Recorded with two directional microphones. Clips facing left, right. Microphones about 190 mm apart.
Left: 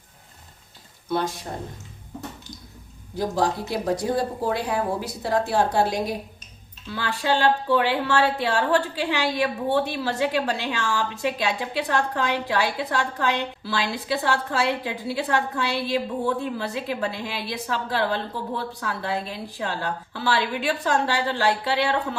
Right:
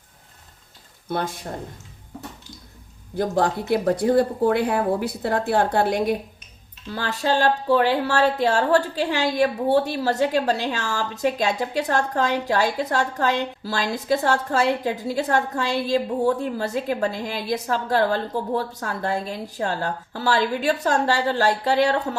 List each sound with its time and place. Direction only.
1.1 s a woman's voice: 55° right (ahead or behind)
3.2 s speech: 55° right (ahead or behind)
6.8 s a woman's voice: 40° right (ahead or behind)